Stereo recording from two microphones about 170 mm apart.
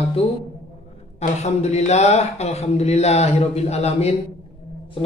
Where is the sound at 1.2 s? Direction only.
40° left (ahead or behind).